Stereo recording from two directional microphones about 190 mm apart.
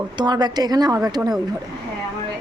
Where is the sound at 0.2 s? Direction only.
20° right (ahead or behind).